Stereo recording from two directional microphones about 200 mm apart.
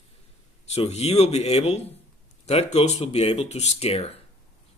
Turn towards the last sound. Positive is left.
turn(degrees=30)  # may be behind; listen again after turning